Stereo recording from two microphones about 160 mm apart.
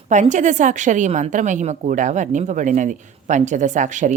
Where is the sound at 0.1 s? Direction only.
50° right (ahead or behind).